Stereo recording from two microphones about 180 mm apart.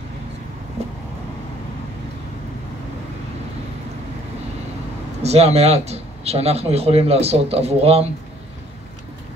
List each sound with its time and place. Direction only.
5.2 s speech: 35° right (ahead or behind)